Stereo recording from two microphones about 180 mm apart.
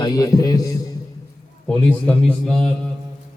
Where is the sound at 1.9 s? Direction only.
5° left (ahead or behind).